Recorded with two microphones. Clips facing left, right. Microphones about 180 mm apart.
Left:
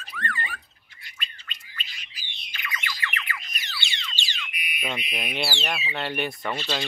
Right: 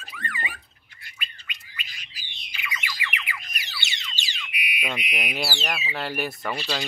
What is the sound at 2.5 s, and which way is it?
Squawk, 5° right (ahead or behind).